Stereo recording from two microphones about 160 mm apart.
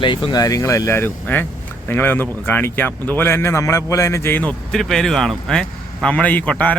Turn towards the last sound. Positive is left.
turn(degrees=10)  # may be behind; listen again after turning